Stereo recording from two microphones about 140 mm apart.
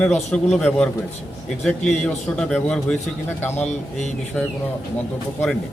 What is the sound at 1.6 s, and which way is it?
A man's voice, 5° left (ahead or behind).